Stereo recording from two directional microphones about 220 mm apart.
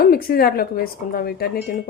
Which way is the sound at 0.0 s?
40° left (ahead or behind).